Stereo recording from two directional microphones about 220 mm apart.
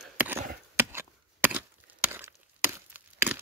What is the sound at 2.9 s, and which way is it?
Wood, 10° right (ahead or behind).